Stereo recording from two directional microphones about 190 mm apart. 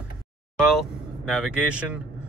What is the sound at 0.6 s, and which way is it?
Speech, centre (ahead or behind).